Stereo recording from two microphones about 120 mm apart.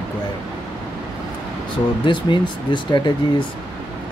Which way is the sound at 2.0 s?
40° left (ahead or behind).